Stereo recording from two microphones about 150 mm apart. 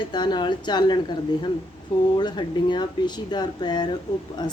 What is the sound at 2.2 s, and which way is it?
A woman's voice, 30° left (ahead or behind).